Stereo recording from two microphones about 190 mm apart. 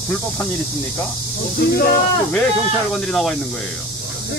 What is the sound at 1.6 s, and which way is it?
Speech, 60° left (ahead or behind).